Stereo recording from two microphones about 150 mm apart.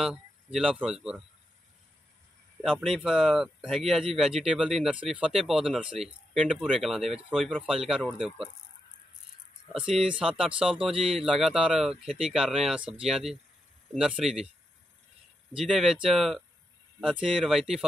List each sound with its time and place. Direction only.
0.0 s speech: centre (ahead or behind)
2.7 s speech: centre (ahead or behind)
9.8 s speech: 5° right (ahead or behind)
10.7 s speech: 35° right (ahead or behind)
11.1 s speech: centre (ahead or behind)
15.7 s speech: centre (ahead or behind)